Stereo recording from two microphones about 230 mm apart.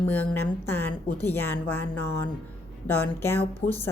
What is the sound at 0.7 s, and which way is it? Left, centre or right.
A woman's voice, centre.